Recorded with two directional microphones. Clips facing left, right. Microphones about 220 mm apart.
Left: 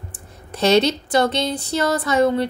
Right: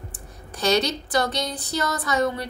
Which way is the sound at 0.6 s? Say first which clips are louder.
Left 6 dB; 25° left (ahead or behind).